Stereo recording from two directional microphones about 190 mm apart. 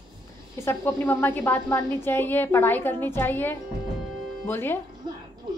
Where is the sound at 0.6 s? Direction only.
10° left (ahead or behind).